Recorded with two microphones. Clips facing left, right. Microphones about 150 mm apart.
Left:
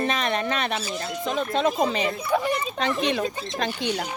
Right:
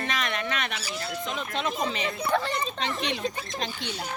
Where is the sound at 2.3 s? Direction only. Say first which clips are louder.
Left 1 dB; 10° left (ahead or behind).